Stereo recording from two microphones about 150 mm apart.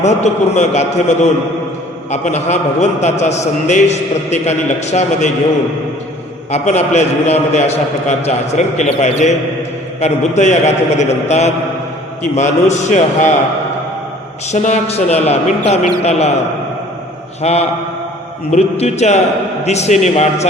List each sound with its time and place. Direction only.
0.0 s a man's voice: 50° left (ahead or behind)
6.5 s a man's voice: 45° left (ahead or behind)
14.4 s a man's voice: 50° left (ahead or behind)
17.4 s a man's voice: 45° left (ahead or behind)